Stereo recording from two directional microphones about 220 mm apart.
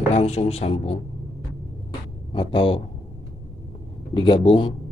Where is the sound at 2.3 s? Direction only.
25° left (ahead or behind).